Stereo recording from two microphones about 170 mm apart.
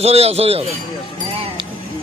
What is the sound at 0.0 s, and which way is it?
Speech, 35° right (ahead or behind).